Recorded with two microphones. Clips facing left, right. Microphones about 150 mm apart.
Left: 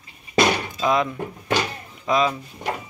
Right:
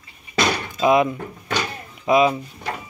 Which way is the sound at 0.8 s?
15° right (ahead or behind).